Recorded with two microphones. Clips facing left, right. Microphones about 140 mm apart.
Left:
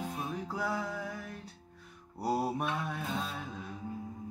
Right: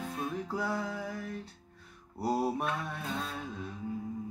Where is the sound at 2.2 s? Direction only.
Centre (ahead or behind).